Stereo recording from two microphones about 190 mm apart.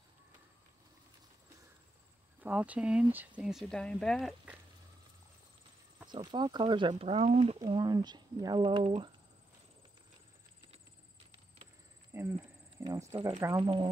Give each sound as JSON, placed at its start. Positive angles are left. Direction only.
{"t": 2.4, "sound": "speech", "side_deg": -5}
{"t": 6.0, "sound": "speech", "side_deg": -25}
{"t": 7.5, "sound": "speech", "side_deg": -20}
{"t": 11.3, "sound": "a sound", "side_deg": -35}
{"t": 12.1, "sound": "cricket", "side_deg": -15}
{"t": 12.8, "sound": "speech", "side_deg": -15}